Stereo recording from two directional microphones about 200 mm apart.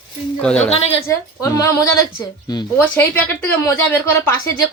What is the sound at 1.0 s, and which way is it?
Speech, 15° left (ahead or behind).